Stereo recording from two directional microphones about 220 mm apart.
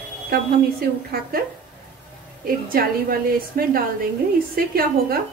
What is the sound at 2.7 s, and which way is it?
A woman's voice, 40° right (ahead or behind).